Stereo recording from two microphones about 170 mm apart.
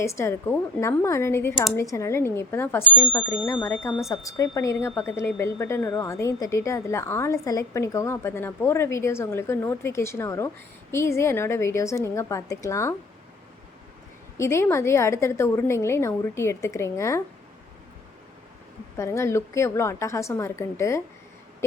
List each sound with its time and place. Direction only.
0.0 s a woman's voice: 15° left (ahead or behind)
14.3 s a woman's voice: 15° left (ahead or behind)
18.9 s a woman's voice: 15° left (ahead or behind)